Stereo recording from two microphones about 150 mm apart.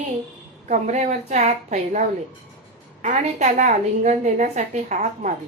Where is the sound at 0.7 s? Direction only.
50° right (ahead or behind).